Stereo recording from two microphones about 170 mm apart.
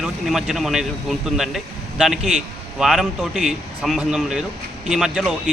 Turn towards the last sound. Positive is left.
turn(degrees=-5)  # may be behind; listen again after turning